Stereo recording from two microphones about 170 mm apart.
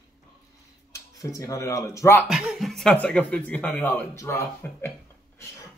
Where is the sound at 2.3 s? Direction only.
5° right (ahead or behind).